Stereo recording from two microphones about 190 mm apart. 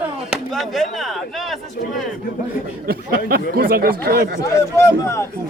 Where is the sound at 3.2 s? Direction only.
55° right (ahead or behind).